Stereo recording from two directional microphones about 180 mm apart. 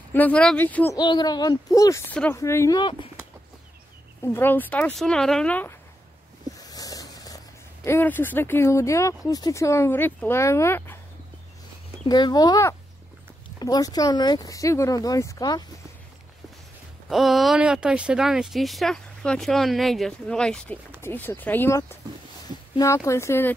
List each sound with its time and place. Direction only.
0.1 s speech: 10° left (ahead or behind)
0.9 s speech: 25° left (ahead or behind)
4.2 s speech: 15° left (ahead or behind)
6.5 s a sound: 20° left (ahead or behind)
7.8 s speech: 10° left (ahead or behind)
12.1 s speech: 25° left (ahead or behind)
17.1 s speech: centre (ahead or behind)